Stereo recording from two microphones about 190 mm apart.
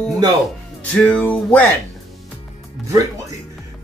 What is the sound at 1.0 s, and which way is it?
Speech, 5° left (ahead or behind).